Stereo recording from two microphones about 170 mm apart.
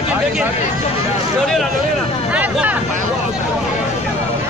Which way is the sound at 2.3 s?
10° right (ahead or behind).